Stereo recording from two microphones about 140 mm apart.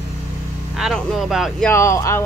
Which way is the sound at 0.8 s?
Centre (ahead or behind).